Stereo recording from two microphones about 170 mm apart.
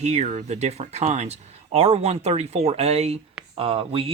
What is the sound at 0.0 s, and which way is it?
Speech, 40° right (ahead or behind).